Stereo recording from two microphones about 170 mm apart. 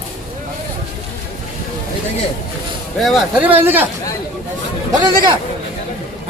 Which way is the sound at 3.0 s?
5° right (ahead or behind).